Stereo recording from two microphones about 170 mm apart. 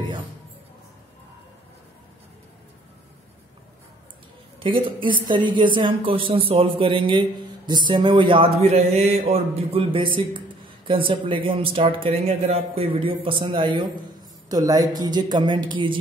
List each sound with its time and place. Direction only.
4.6 s speech: 30° right (ahead or behind)